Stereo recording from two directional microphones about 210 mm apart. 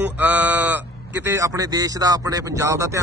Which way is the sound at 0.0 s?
5° right (ahead or behind).